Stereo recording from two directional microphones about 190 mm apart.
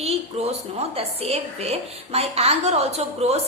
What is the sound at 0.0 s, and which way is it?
A woman's voice, 35° right (ahead or behind).